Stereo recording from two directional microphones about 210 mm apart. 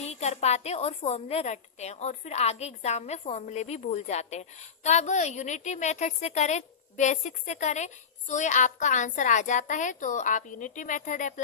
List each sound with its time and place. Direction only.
0.0 s a woman's voice: 30° left (ahead or behind)